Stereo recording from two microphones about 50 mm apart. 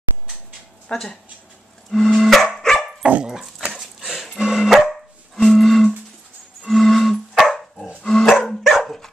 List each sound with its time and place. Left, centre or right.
0.9 s music: centre
2.4 s dog: centre
3.2 s dog: centre
4.4 s dog: centre
4.7 s dog: centre
6.7 s music: centre
7.4 s dog: centre
8.0 s dog: centre
8.3 s dog: centre